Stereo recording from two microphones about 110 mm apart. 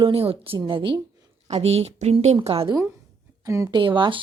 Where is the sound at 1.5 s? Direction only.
75° right (ahead or behind); by 2.6 s 60° right (ahead or behind).